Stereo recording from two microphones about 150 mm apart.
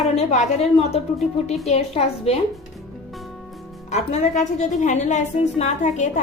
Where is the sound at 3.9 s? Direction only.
50° left (ahead or behind).